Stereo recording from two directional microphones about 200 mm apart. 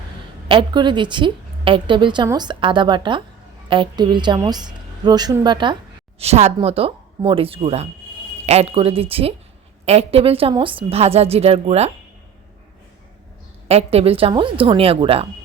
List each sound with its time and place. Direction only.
0.4 s a woman's voice: 25° right (ahead or behind)
13.7 s a woman's voice: 30° right (ahead or behind)